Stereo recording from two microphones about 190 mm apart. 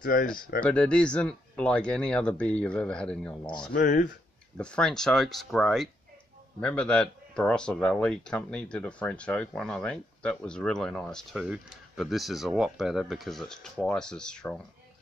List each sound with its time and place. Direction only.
0.0 s speech: 50° left (ahead or behind)
0.6 s speech: 5° left (ahead or behind)
3.7 s speech: 45° left (ahead or behind)
4.6 s speech: 5° left (ahead or behind)